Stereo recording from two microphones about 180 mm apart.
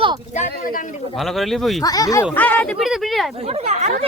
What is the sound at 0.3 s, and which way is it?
Speech, 45° left (ahead or behind).